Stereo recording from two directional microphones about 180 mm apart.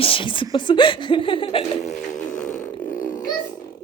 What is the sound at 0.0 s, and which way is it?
A woman's voice, 30° left (ahead or behind).